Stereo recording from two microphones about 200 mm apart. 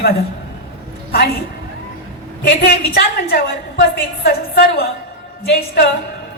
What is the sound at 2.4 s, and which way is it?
Speech, 50° left (ahead or behind).